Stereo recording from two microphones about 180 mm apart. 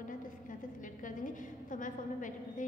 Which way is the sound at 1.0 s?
45° left (ahead or behind).